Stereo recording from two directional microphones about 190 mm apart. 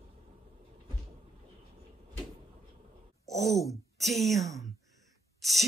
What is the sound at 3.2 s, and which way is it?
Speech, centre (ahead or behind).